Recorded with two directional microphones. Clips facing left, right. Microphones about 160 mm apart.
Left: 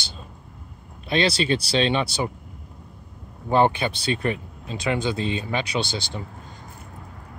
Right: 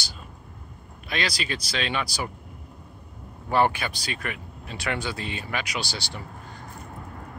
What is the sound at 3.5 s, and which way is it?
Speech, 20° left (ahead or behind).